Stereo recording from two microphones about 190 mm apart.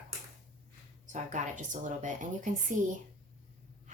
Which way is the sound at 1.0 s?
40° right (ahead or behind).